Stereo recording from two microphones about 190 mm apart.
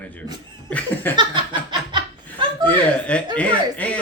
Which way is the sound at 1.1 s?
25° right (ahead or behind).